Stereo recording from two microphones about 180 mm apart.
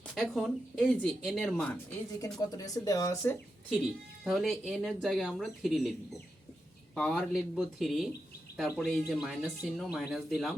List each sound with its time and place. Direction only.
0.0 s speech: 5° left (ahead or behind)
2.2 s speech: 20° left (ahead or behind)
4.2 s speech: centre (ahead or behind)